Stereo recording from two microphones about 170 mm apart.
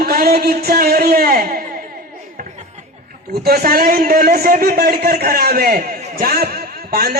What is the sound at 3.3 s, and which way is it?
A man's voice, 65° right (ahead or behind).